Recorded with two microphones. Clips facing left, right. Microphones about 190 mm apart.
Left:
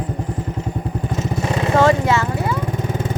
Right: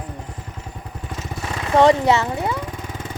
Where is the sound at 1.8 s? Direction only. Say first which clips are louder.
Right 3 dB; 20° right (ahead or behind).